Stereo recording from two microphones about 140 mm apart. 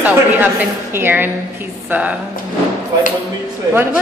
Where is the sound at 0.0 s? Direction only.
10° right (ahead or behind).